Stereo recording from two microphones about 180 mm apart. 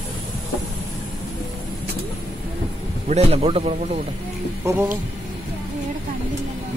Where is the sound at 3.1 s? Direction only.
35° right (ahead or behind).